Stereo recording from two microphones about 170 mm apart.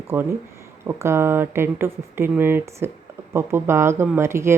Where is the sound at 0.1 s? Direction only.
10° right (ahead or behind).